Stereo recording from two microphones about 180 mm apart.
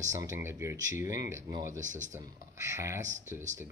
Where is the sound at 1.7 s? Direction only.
45° right (ahead or behind).